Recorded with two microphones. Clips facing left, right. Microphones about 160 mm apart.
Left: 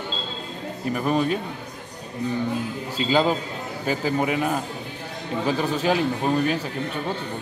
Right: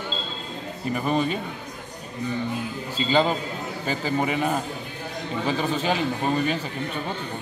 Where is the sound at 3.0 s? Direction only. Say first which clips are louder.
Left 1 dB; 5° left (ahead or behind).